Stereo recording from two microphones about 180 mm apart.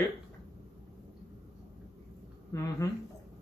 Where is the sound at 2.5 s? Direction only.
15° left (ahead or behind).